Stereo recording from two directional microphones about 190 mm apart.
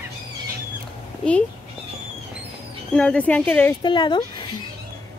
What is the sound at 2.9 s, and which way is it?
Speech, 5° left (ahead or behind).